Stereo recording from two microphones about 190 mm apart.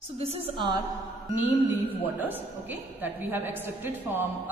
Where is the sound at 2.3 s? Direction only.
10° right (ahead or behind).